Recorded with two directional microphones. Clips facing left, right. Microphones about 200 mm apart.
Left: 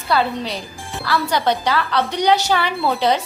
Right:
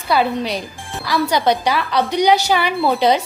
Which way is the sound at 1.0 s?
15° right (ahead or behind).